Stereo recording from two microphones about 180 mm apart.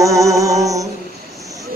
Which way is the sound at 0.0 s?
15° right (ahead or behind).